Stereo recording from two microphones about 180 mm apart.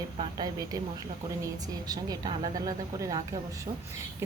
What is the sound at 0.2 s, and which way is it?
A woman's voice, 20° right (ahead or behind).